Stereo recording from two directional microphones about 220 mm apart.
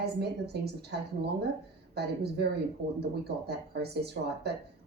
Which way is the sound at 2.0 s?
50° right (ahead or behind).